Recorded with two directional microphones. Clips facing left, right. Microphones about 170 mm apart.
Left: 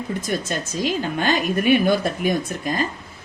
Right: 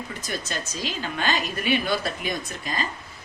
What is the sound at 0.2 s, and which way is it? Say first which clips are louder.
A woman's voice: left 6 dB; 50° left (ahead or behind).